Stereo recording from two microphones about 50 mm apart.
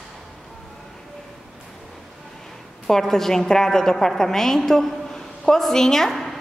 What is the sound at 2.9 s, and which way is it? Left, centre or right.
A woman's voice, centre.